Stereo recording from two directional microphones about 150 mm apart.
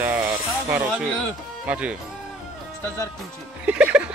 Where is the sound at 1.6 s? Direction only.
10° right (ahead or behind).